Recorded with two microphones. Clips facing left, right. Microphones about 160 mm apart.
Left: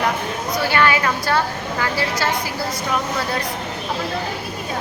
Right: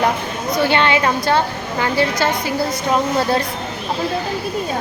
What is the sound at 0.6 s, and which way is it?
A woman's voice, 25° right (ahead or behind).